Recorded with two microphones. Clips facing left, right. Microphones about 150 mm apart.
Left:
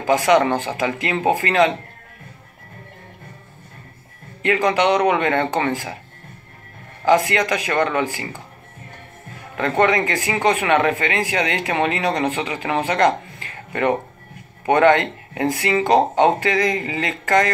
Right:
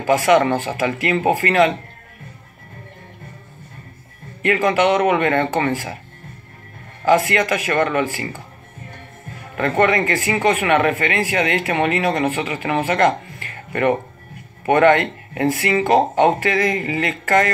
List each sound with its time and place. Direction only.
0.0 s speech: 15° left (ahead or behind)
4.4 s speech: 20° left (ahead or behind)
7.2 s speech: 15° left (ahead or behind)
9.6 s speech: 20° left (ahead or behind)